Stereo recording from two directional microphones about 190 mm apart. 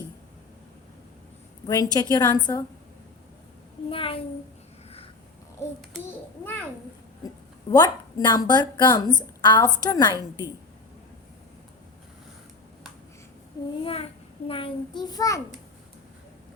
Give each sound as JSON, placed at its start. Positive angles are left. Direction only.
{"t": 1.6, "sound": "a child's voice", "side_deg": 20}
{"t": 3.8, "sound": "a child's voice", "side_deg": 30}
{"t": 7.7, "sound": "a child's voice", "side_deg": 20}
{"t": 13.8, "sound": "a child's voice", "side_deg": 30}